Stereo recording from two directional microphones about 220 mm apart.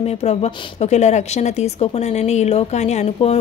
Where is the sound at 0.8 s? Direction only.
30° left (ahead or behind).